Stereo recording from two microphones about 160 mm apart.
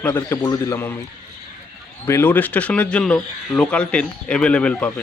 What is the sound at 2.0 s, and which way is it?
Speech, 15° left (ahead or behind).